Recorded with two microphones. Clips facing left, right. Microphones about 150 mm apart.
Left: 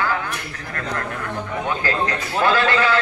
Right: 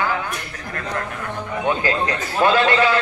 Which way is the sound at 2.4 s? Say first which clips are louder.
Right 2 dB; 20° right (ahead or behind).